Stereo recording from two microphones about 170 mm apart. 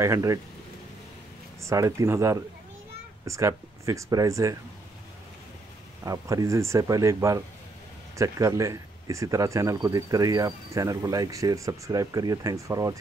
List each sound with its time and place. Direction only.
0.0 s speech: 15° right (ahead or behind)
1.6 s speech: 20° right (ahead or behind)
6.0 s speech: 20° right (ahead or behind)